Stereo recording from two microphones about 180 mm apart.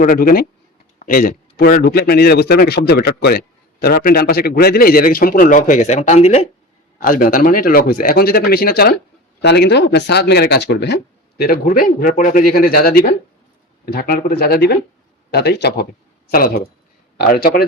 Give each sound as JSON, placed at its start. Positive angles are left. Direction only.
{"t": 0.0, "sound": "a man's voice", "side_deg": 55}
{"t": 7.0, "sound": "a man's voice", "side_deg": 50}
{"t": 9.4, "sound": "a man's voice", "side_deg": 70}
{"t": 17.2, "sound": "a man's voice", "side_deg": 55}